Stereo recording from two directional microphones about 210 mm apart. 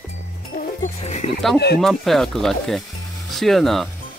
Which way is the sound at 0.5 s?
35° left (ahead or behind).